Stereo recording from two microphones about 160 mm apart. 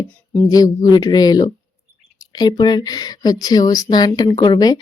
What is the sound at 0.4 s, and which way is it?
Speech, 25° left (ahead or behind).